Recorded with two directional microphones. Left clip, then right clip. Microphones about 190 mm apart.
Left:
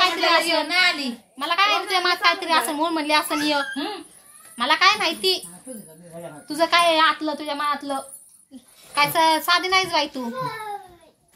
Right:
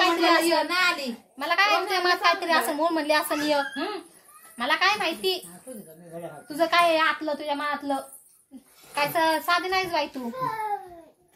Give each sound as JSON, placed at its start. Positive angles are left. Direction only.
{"t": 0.0, "sound": "a sound", "side_deg": 5}
{"t": 0.7, "sound": "child singing", "side_deg": -45}
{"t": 1.4, "sound": "a woman's voice", "side_deg": 0}
{"t": 4.6, "sound": "speech", "side_deg": 25}
{"t": 6.4, "sound": "a woman's voice", "side_deg": 30}